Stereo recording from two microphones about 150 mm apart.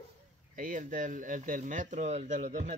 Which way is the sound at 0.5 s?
60° right (ahead or behind).